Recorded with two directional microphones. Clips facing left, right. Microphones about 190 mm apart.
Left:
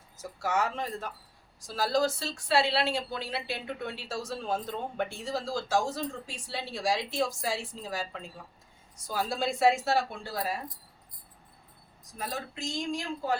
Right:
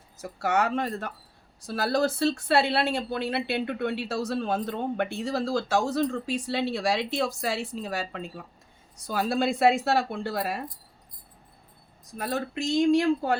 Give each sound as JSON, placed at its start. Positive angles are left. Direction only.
{"t": 0.2, "sound": "speech", "side_deg": -65}
{"t": 12.1, "sound": "speech", "side_deg": -60}